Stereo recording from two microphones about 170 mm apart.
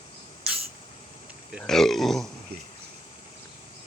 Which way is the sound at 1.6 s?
Centre (ahead or behind).